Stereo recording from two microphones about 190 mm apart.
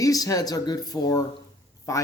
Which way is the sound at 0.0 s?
20° left (ahead or behind).